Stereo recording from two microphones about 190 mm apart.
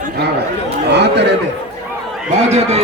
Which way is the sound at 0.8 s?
65° right (ahead or behind).